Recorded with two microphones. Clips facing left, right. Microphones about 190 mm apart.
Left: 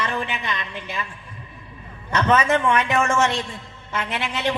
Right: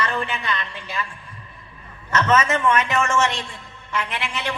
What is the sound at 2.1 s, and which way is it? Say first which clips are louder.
A man's voice: left 1 dB; 15° left (ahead or behind).